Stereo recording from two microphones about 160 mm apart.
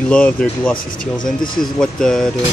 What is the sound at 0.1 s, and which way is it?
Speech, 5° left (ahead or behind).